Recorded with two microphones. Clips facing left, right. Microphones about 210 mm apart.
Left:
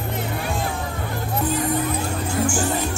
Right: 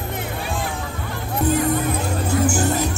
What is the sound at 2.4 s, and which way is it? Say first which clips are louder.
Speech: right 1 dB; 40° right (ahead or behind).